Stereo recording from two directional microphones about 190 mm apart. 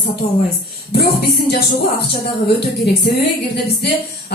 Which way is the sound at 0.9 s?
55° left (ahead or behind).